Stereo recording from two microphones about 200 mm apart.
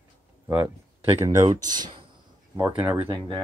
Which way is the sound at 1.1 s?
15° right (ahead or behind).